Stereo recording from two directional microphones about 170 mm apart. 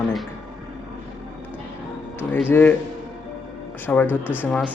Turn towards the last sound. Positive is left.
turn(degrees=10)  # may be behind; listen again after turning